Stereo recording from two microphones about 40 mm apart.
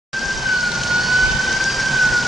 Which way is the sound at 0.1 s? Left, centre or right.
Centre.